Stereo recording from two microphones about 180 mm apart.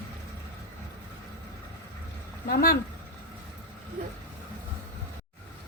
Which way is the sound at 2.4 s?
55° left (ahead or behind).